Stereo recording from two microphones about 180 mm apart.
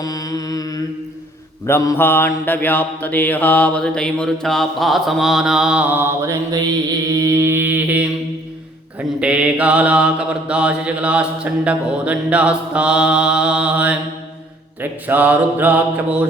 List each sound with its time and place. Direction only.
0.0 s mantra: 20° left (ahead or behind); by 6.7 s 20° right (ahead or behind)
7.2 s a sound: 15° right (ahead or behind)
9.0 s mantra: 5° right (ahead or behind)